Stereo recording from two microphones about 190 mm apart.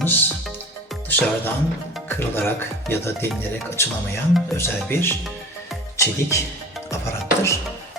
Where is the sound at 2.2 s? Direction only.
10° left (ahead or behind).